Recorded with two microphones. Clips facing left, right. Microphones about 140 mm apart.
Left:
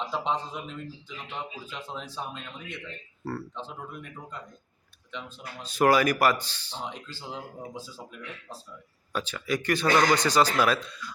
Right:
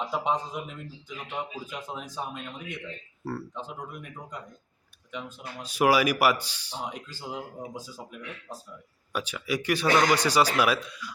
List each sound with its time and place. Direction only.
0.0 s speech: 15° right (ahead or behind)
5.6 s speech: 10° right (ahead or behind)